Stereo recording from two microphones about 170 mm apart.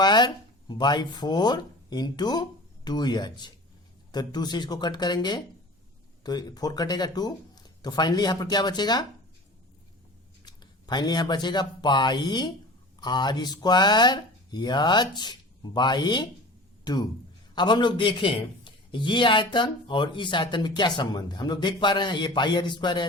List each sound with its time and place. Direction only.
0.0 s a sound: 25° left (ahead or behind)
0.7 s a man's voice: 25° left (ahead or behind)
10.4 s a man's voice: 25° left (ahead or behind)